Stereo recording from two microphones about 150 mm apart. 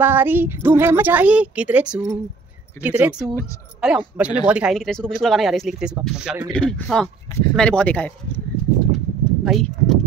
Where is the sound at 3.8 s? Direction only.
5° right (ahead or behind).